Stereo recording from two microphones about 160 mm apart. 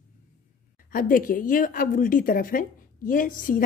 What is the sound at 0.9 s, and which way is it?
A woman's voice, 60° left (ahead or behind).